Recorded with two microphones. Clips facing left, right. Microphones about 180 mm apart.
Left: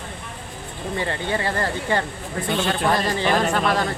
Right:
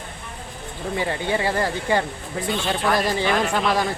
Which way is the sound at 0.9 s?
15° right (ahead or behind).